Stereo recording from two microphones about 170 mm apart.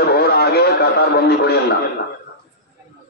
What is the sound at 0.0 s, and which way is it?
Radio, 65° left (ahead or behind).